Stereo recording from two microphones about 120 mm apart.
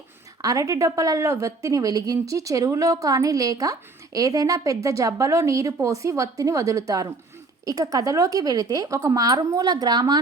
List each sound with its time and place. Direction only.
0.4 s a woman's voice: 30° right (ahead or behind)